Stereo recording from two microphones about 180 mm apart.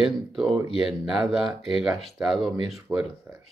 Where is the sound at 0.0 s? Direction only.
Centre (ahead or behind).